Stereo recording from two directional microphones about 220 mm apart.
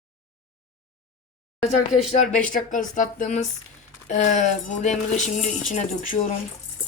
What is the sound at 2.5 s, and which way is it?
Speech, 35° left (ahead or behind).